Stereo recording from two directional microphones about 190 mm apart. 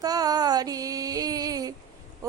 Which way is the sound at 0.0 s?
20° right (ahead or behind).